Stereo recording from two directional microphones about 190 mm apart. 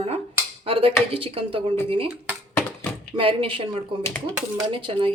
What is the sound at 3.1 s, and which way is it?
Speech, 25° right (ahead or behind).